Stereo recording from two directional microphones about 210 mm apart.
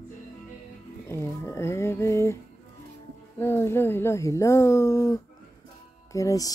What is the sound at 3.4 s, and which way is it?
Speech, 10° left (ahead or behind).